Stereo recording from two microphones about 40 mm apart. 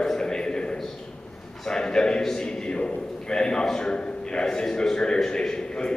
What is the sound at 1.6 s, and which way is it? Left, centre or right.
A man's voice, centre.